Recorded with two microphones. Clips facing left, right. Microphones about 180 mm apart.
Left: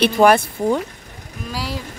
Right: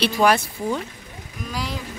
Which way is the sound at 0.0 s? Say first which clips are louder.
Left 5 dB; 50° left (ahead or behind).